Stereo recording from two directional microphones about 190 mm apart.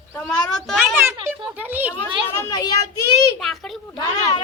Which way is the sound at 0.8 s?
10° right (ahead or behind).